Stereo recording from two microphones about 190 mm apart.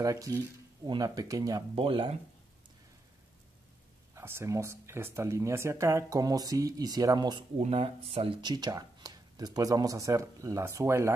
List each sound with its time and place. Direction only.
0.0 s speech: 20° right (ahead or behind)
1.8 s speech: 30° right (ahead or behind)
4.1 s speech: 15° right (ahead or behind)
7.6 s speech: 30° right (ahead or behind); by 11.1 s 15° right (ahead or behind)